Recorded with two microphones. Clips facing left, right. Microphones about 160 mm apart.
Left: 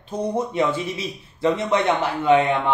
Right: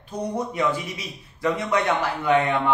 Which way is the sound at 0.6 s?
25° left (ahead or behind).